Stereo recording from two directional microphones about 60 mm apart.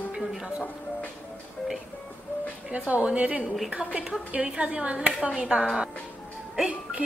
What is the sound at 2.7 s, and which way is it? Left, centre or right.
A woman's voice, right.